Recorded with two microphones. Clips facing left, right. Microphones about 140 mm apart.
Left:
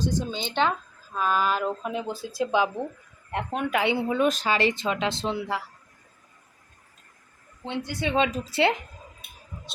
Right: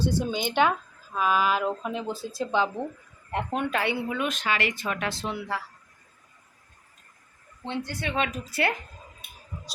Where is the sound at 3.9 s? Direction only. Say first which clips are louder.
Left 6 dB; 30° left (ahead or behind).